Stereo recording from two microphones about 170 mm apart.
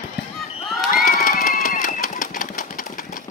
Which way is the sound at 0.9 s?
55° left (ahead or behind).